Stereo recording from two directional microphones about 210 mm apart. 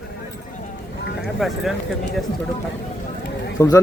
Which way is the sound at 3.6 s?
15° left (ahead or behind).